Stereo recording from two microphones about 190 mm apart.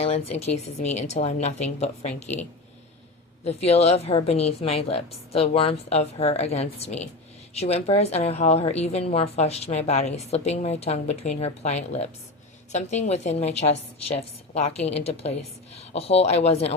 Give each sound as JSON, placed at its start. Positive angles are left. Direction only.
{"t": 0.0, "sound": "a woman's voice", "side_deg": 30}